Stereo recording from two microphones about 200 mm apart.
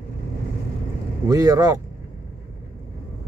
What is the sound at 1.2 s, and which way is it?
Speech, 15° right (ahead or behind).